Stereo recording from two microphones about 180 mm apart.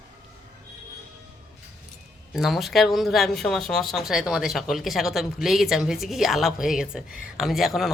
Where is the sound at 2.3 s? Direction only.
Centre (ahead or behind).